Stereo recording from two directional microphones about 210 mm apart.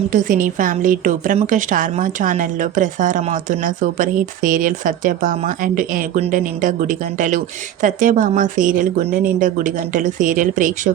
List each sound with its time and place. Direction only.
0.1 s speech: 40° right (ahead or behind)